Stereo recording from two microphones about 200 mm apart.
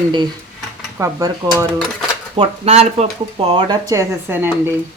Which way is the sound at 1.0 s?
20° right (ahead or behind).